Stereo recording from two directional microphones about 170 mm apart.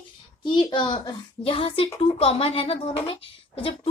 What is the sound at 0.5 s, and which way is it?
Speech, 25° left (ahead or behind).